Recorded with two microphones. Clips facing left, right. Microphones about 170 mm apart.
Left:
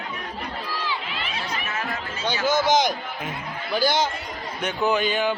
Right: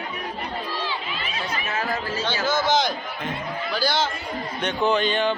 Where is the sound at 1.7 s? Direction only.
30° right (ahead or behind).